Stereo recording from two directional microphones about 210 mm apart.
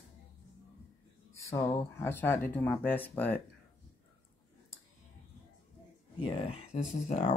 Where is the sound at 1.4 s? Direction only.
10° left (ahead or behind).